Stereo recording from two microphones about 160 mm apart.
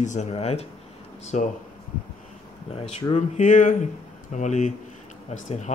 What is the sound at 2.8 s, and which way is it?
Speech, 35° left (ahead or behind).